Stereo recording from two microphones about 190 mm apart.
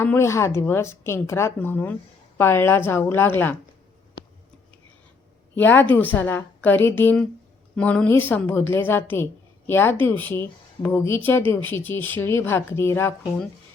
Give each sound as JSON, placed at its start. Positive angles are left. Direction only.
{"t": 0.0, "sound": "a woman's voice", "side_deg": 15}
{"t": 5.5, "sound": "a woman's voice", "side_deg": 10}